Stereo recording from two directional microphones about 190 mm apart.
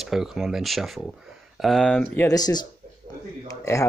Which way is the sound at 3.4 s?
15° left (ahead or behind).